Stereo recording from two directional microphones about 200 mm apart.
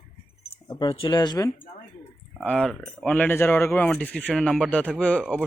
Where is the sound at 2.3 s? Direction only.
5° left (ahead or behind).